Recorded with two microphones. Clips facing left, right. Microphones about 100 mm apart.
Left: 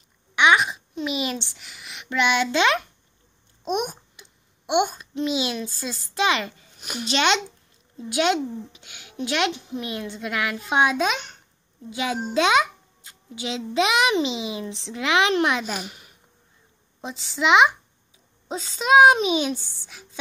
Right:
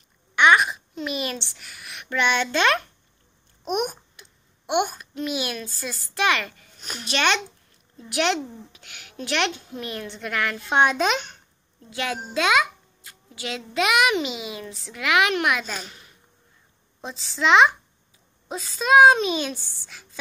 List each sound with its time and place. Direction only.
0.4 s a child's voice: 15° left (ahead or behind)
4.2 s babbling: 15° left (ahead or behind)
4.9 s a child's voice: 20° left (ahead or behind)
6.8 s a child's voice: 10° left (ahead or behind)
11.9 s a child's voice: 15° left (ahead or behind)
15.6 s a child's voice: 10° left (ahead or behind)
18.5 s a child's voice: 25° left (ahead or behind)